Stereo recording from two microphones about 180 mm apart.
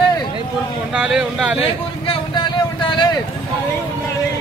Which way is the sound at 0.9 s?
5° right (ahead or behind).